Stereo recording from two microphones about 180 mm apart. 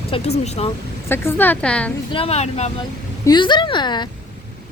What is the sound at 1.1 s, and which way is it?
Speech, 15° left (ahead or behind).